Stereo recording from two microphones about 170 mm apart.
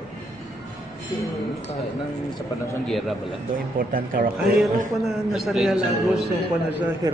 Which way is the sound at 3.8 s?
55° right (ahead or behind).